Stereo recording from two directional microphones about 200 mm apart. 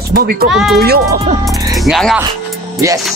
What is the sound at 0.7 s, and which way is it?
Speech, 50° right (ahead or behind).